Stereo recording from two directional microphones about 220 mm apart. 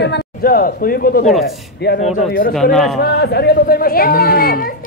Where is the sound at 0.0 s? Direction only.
45° left (ahead or behind).